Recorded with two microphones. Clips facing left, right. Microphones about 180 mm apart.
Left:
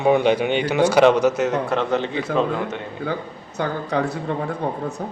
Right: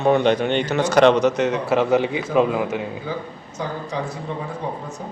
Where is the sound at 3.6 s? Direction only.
65° left (ahead or behind).